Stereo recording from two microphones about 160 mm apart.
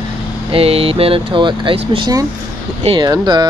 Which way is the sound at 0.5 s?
40° right (ahead or behind).